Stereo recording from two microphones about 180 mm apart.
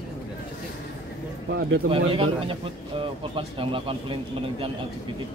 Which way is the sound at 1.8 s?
30° right (ahead or behind).